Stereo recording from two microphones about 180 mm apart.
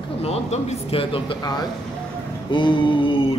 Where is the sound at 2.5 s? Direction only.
25° left (ahead or behind).